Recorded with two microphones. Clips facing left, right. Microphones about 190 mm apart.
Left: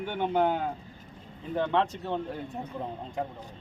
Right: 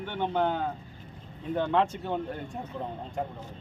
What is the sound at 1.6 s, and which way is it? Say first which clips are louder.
Speech: right 1 dB; centre (ahead or behind).